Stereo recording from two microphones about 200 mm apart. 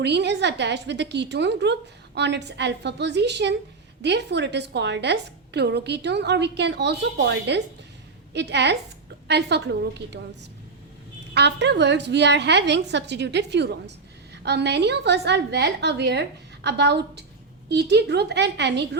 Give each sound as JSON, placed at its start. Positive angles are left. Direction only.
{"t": 0.0, "sound": "a woman's voice", "side_deg": -60}
{"t": 11.3, "sound": "a woman's voice", "side_deg": -60}